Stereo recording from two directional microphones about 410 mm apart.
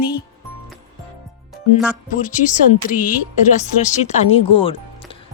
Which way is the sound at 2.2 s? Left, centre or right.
Centre.